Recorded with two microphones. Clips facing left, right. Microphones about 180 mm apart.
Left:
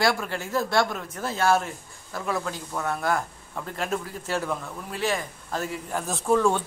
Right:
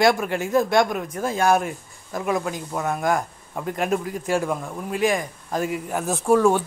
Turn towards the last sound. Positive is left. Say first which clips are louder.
# right 4 dB
turn(degrees=-10)  # may be behind; listen again after turning